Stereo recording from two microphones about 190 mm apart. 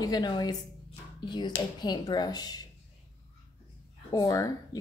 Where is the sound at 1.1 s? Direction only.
25° left (ahead or behind).